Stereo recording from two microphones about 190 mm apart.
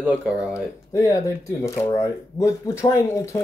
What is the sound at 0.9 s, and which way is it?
Speech, 15° left (ahead or behind).